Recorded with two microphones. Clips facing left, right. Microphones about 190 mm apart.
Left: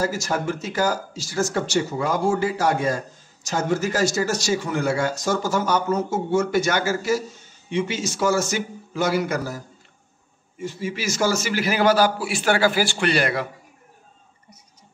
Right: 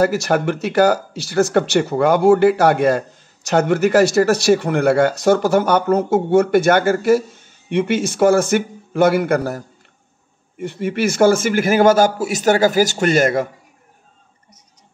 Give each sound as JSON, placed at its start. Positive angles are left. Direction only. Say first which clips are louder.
{"t": 0.0, "sound": "speech", "louder": "right 8 dB", "side_deg": -65}
{"t": 10.6, "sound": "a man's voice", "louder": "right 8 dB", "side_deg": -60}